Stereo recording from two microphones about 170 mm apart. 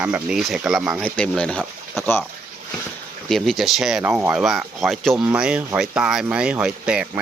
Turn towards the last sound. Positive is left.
turn(degrees=-5)  # may be behind; listen again after turning